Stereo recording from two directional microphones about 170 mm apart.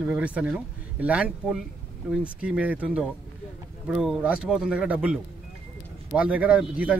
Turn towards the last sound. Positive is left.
turn(degrees=-10)  # may be behind; listen again after turning